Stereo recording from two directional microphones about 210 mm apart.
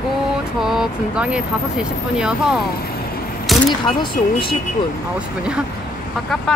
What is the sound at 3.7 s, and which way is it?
Speech, 20° left (ahead or behind).